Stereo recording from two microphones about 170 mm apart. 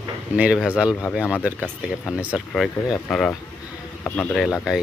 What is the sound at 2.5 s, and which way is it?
Speech, 5° left (ahead or behind).